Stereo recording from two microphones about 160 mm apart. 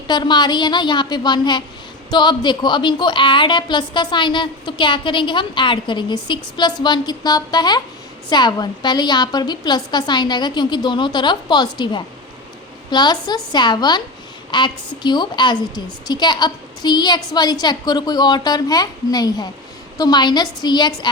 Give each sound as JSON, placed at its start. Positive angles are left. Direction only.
{"t": 0.1, "sound": "a woman's voice", "side_deg": 25}